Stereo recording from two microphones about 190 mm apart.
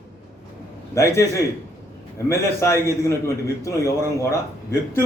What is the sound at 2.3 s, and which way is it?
Speech, 15° left (ahead or behind).